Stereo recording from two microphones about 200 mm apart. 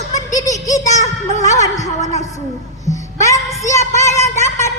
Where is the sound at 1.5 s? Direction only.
15° left (ahead or behind).